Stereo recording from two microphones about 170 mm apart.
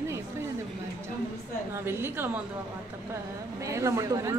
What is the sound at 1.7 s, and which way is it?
Speech, 15° right (ahead or behind).